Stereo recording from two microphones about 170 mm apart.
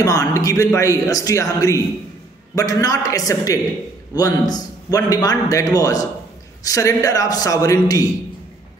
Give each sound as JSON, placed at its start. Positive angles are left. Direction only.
{"t": 0.0, "sound": "a man's voice", "side_deg": 20}